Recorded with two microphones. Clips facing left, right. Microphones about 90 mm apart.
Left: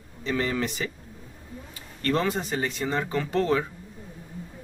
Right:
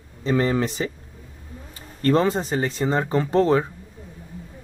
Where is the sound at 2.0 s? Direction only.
35° right (ahead or behind).